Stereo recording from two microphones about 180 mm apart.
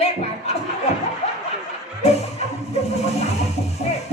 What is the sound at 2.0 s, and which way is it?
Music, 35° left (ahead or behind).